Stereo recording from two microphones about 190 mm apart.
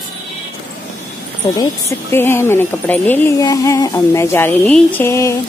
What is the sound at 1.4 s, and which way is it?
A woman's voice, 20° left (ahead or behind).